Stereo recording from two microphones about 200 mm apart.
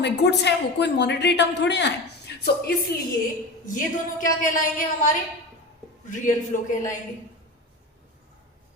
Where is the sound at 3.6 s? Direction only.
40° left (ahead or behind).